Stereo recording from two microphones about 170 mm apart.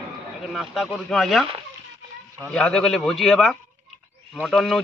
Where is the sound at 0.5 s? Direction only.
Centre (ahead or behind).